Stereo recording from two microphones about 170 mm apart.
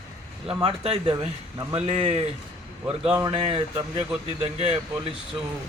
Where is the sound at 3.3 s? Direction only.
30° right (ahead or behind).